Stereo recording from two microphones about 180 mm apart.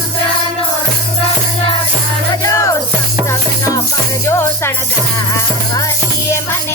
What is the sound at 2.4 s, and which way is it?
Music, 15° left (ahead or behind).